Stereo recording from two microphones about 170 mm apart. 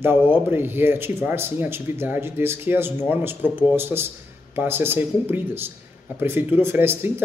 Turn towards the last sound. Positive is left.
turn(degrees=-15)  # may be behind; listen again after turning